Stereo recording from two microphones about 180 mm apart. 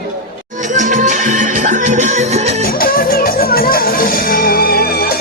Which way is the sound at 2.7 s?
55° left (ahead or behind).